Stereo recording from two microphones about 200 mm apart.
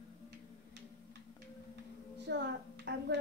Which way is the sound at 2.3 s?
60° right (ahead or behind).